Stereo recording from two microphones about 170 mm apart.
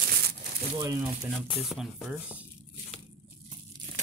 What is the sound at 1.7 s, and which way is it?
Speech, centre (ahead or behind).